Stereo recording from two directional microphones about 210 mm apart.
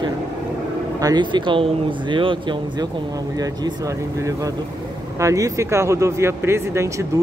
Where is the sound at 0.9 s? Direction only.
20° right (ahead or behind).